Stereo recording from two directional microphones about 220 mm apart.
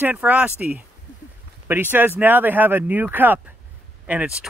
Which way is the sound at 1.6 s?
10° right (ahead or behind).